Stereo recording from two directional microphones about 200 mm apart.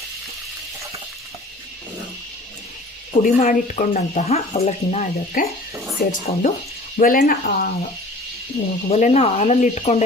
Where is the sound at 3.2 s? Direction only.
40° left (ahead or behind).